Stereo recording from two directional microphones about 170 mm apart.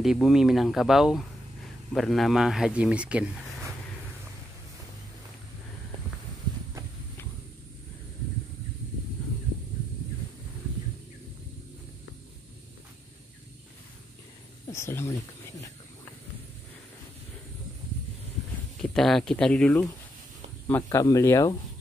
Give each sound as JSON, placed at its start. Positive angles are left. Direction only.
{"t": 0.0, "sound": "speech", "side_deg": 0}
{"t": 14.7, "sound": "a sound", "side_deg": 15}
{"t": 18.8, "sound": "speech", "side_deg": 0}